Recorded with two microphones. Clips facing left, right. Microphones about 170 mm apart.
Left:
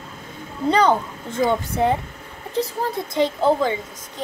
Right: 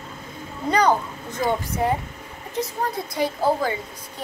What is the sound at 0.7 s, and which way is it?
A child's voice, 30° left (ahead or behind).